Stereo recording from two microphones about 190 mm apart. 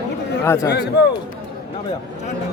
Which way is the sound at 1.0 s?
60° left (ahead or behind).